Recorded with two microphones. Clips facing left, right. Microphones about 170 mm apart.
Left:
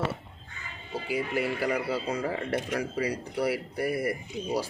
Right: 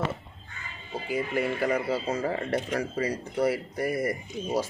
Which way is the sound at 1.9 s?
25° right (ahead or behind).